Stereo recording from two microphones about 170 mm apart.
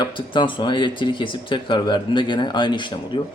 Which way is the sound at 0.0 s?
30° left (ahead or behind).